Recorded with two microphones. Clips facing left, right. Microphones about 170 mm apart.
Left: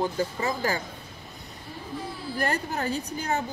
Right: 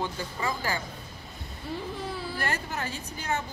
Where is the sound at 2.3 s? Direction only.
40° left (ahead or behind).